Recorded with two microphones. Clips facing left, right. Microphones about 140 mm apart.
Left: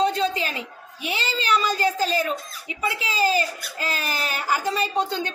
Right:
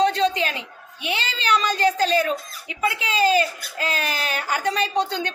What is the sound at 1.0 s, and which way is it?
Speech, 35° left (ahead or behind).